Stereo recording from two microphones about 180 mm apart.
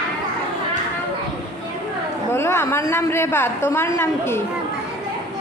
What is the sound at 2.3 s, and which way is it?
A woman's voice, 15° left (ahead or behind).